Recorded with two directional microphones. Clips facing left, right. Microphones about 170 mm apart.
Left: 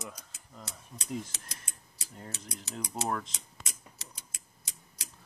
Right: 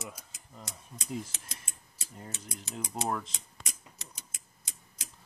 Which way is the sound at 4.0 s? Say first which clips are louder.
Right 1 dB; 20° right (ahead or behind).